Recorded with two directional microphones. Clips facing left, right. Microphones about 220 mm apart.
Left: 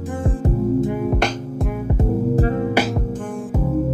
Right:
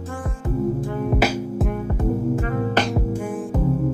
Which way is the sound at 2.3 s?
35° left (ahead or behind).